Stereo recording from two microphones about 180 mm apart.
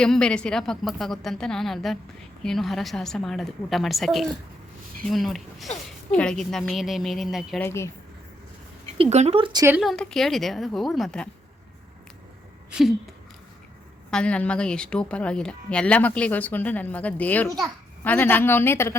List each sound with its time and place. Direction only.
0.0 s a woman's voice: 5° left (ahead or behind)
7.6 s a woman's voice: 15° left (ahead or behind)
9.0 s speech: 35° right (ahead or behind); by 9.7 s 20° right (ahead or behind)
9.7 s a woman's voice: centre (ahead or behind)
14.1 s a woman's voice: 5° left (ahead or behind)